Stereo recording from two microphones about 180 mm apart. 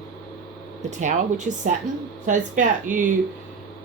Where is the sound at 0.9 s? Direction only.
40° right (ahead or behind).